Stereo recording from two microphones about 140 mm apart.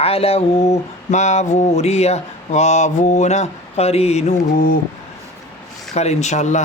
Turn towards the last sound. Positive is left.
turn(degrees=55)  # may be behind; listen again after turning